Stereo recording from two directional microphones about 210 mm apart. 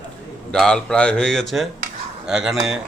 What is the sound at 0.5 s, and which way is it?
Speech, 5° left (ahead or behind).